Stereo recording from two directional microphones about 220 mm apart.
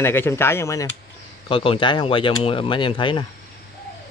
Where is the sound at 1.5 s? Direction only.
25° left (ahead or behind).